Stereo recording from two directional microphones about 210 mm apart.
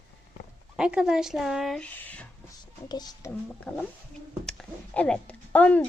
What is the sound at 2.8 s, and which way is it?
Speech, 20° left (ahead or behind).